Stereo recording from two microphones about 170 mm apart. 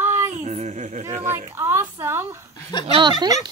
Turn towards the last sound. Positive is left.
turn(degrees=-25)  # may be behind; listen again after turning